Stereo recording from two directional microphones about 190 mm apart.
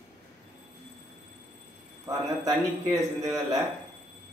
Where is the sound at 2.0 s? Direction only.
15° right (ahead or behind).